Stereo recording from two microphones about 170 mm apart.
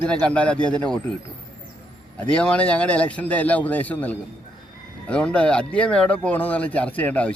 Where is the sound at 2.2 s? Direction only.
5° left (ahead or behind).